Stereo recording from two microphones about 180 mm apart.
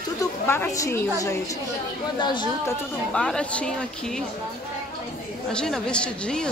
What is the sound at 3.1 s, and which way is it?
Speech, 5° left (ahead or behind).